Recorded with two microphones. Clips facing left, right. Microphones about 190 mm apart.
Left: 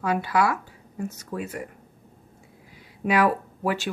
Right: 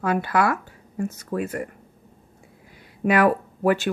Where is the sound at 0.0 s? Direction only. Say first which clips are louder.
Right 2 dB; 50° right (ahead or behind).